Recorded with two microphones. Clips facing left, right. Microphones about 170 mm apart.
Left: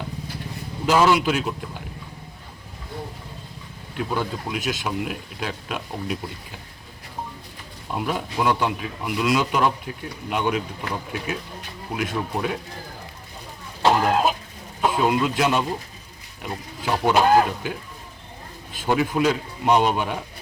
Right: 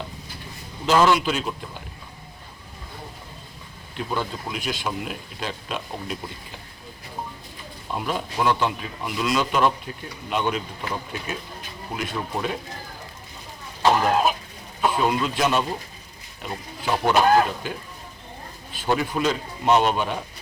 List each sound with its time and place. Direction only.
0.9 s a man's voice: 10° left (ahead or behind)
3.9 s a man's voice: 10° left (ahead or behind)
7.9 s a man's voice: 10° left (ahead or behind)
13.8 s cough: 15° left (ahead or behind)
14.8 s a man's voice: 15° left (ahead or behind)
18.9 s a man's voice: 10° left (ahead or behind)